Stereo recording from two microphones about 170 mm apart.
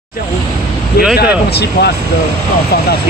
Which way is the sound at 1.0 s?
65° left (ahead or behind).